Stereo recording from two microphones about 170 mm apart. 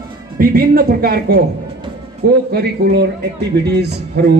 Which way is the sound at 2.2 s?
75° right (ahead or behind).